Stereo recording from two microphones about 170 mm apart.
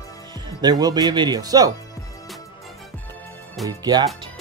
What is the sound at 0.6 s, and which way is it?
Speech, 25° right (ahead or behind).